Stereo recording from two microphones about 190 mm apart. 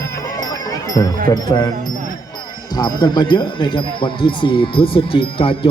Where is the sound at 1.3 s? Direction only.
20° left (ahead or behind).